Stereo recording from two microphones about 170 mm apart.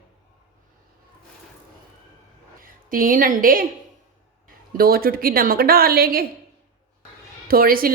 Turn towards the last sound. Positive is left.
turn(degrees=-60)  # may be behind; listen again after turning